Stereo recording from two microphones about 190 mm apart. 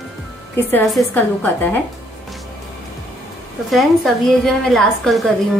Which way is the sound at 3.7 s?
Centre (ahead or behind).